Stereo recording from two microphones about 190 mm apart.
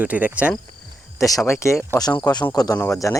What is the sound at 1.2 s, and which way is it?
Speech, 15° left (ahead or behind).